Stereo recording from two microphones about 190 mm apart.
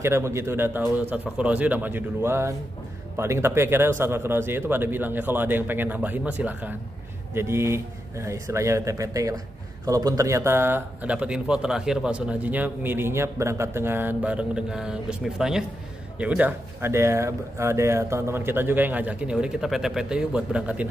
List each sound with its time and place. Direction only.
0.0 s speech: 15° right (ahead or behind)